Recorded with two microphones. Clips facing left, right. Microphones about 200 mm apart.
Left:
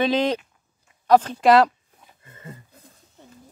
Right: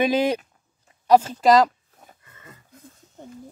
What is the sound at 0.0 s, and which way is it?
Speech, 10° right (ahead or behind).